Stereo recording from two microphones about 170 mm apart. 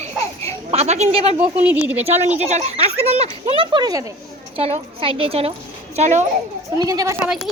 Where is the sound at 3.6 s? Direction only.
25° right (ahead or behind).